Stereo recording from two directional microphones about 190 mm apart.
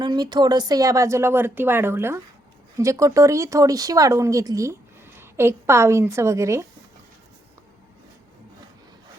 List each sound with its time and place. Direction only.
0.0 s speech: 20° right (ahead or behind)